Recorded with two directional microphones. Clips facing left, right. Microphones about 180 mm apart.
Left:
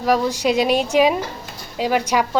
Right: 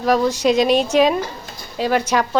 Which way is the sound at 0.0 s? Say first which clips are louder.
Right 2 dB; 10° left (ahead or behind).